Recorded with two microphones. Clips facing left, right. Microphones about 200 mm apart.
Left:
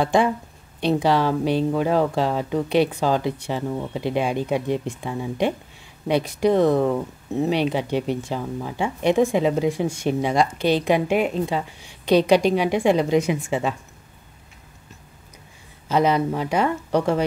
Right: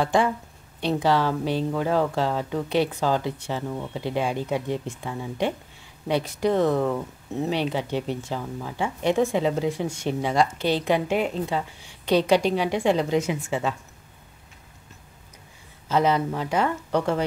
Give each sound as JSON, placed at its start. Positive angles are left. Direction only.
{"t": 0.0, "sound": "speech", "side_deg": 15}
{"t": 15.9, "sound": "speech", "side_deg": 15}